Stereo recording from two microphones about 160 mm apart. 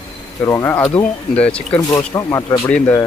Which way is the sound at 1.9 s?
20° left (ahead or behind).